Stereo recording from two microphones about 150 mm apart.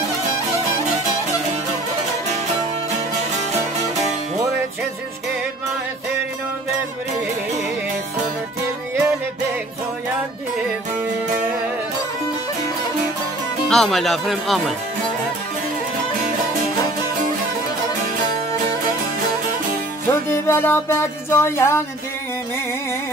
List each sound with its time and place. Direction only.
13.7 s speech: centre (ahead or behind)
20.1 s music: 15° left (ahead or behind)